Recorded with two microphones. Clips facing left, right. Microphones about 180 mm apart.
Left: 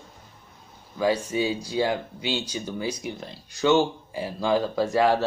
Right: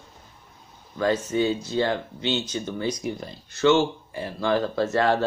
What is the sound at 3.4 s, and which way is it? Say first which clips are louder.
Speech: right 1 dB; 15° left (ahead or behind).